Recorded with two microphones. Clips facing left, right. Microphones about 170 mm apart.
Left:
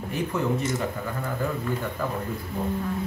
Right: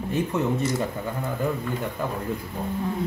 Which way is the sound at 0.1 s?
30° right (ahead or behind).